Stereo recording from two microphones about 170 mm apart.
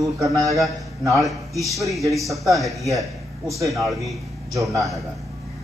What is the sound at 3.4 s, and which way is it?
Speech, 20° right (ahead or behind).